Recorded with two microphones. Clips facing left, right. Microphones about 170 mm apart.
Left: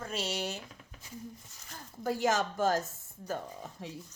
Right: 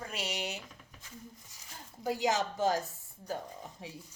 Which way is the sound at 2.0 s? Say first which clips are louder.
Left 1 dB; 15° right (ahead or behind).